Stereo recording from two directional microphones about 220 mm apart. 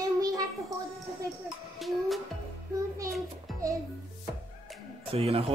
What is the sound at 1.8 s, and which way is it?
Music, centre (ahead or behind).